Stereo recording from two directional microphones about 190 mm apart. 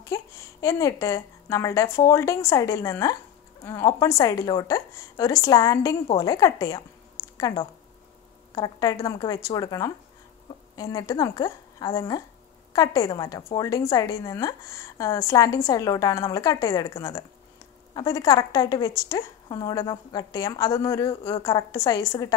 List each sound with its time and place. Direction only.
0.0 s a woman's voice: 15° left (ahead or behind)